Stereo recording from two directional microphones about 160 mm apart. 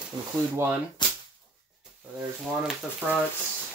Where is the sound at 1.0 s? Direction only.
30° left (ahead or behind).